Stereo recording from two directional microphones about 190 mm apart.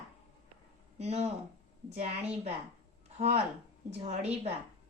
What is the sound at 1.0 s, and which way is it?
Speech, 35° right (ahead or behind).